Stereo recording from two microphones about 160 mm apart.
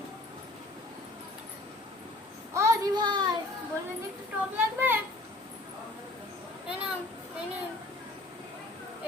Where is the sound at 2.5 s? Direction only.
20° right (ahead or behind).